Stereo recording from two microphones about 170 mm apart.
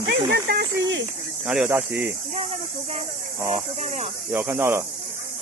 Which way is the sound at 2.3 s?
45° right (ahead or behind).